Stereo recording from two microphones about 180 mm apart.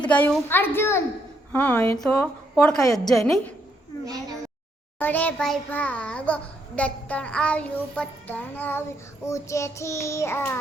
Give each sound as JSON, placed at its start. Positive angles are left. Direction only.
{"t": 0.0, "sound": "a child's voice", "side_deg": 5}
{"t": 4.9, "sound": "a child's voice", "side_deg": 10}